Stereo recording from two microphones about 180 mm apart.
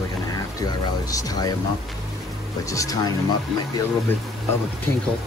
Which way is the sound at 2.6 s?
20° left (ahead or behind).